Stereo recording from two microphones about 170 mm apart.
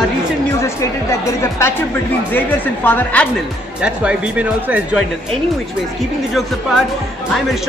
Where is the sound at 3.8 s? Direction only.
5° right (ahead or behind).